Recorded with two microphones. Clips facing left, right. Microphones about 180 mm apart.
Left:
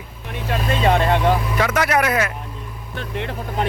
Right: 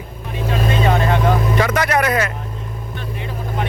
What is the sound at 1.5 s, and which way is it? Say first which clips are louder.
Speech: right 2 dB; 5° left (ahead or behind).